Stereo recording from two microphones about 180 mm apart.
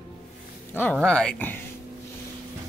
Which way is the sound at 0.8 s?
5° left (ahead or behind).